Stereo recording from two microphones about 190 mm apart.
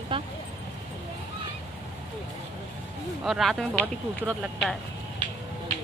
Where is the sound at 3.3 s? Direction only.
Centre (ahead or behind).